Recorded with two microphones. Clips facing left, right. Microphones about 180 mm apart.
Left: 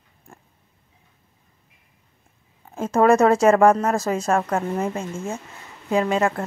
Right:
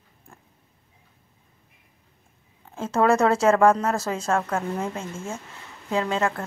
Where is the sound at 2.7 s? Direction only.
10° left (ahead or behind).